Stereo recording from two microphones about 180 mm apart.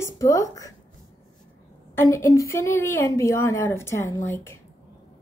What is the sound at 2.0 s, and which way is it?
A woman's voice, 15° left (ahead or behind).